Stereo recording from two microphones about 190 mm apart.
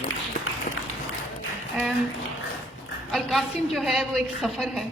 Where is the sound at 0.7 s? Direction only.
50° left (ahead or behind).